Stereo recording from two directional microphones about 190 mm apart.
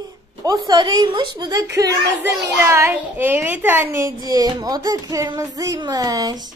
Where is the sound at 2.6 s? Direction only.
15° right (ahead or behind).